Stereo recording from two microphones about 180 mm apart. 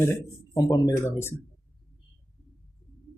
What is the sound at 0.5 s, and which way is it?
Speech, 20° left (ahead or behind).